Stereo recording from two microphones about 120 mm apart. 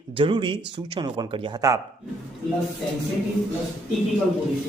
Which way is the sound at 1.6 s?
30° right (ahead or behind).